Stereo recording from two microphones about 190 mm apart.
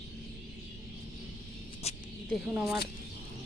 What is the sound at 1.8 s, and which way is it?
Mouse, 35° left (ahead or behind).